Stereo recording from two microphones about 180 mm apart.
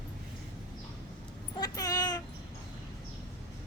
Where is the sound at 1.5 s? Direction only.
20° left (ahead or behind).